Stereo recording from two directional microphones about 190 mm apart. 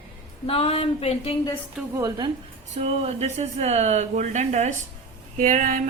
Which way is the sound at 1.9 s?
20° right (ahead or behind).